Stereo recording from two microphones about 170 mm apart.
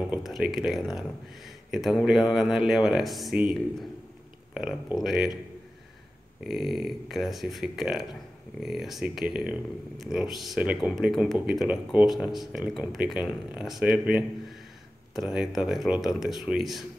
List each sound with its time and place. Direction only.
0.1 s speech: 5° right (ahead or behind)
4.6 s speech: 5° right (ahead or behind)
6.4 s a man's voice: centre (ahead or behind)